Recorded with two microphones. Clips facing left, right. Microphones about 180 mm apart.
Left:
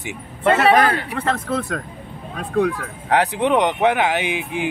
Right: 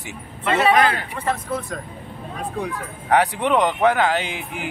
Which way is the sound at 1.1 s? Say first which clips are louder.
Left 3 dB; 70° left (ahead or behind).